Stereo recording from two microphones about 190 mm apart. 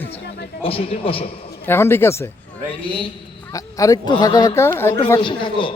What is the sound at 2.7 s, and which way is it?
Speech, 25° left (ahead or behind).